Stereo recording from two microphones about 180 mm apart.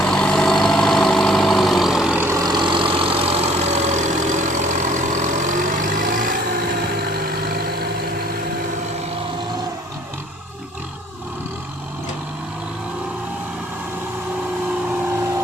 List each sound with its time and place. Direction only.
0.0 s vehicle: 5° left (ahead or behind); by 6.3 s 50° right (ahead or behind)
7.0 s vehicle: 60° right (ahead or behind)